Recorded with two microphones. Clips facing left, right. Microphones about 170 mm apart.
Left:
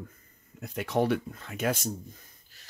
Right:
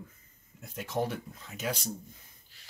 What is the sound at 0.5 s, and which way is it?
Speech, 70° left (ahead or behind).